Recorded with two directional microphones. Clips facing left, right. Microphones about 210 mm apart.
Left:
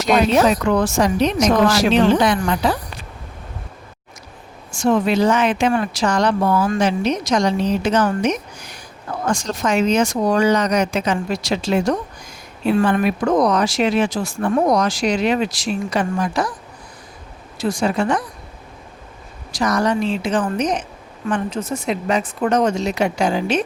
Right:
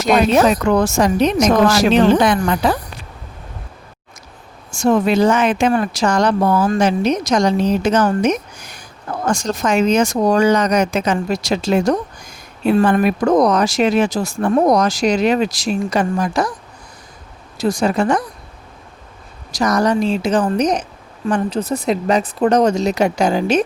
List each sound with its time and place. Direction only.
0.0 s a woman's voice: 50° right (ahead or behind)
4.7 s a woman's voice: 45° right (ahead or behind)
17.6 s speech: 40° right (ahead or behind)
19.5 s speech: 40° right (ahead or behind)